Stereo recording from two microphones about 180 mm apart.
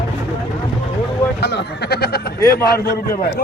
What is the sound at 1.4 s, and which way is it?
Speech, 70° left (ahead or behind).